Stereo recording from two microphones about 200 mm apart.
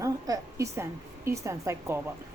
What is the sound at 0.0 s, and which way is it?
A woman's voice, 15° right (ahead or behind).